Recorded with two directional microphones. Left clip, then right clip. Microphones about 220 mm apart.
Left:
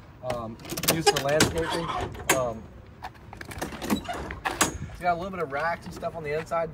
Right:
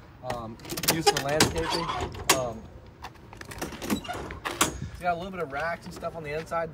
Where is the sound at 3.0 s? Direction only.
Centre (ahead or behind).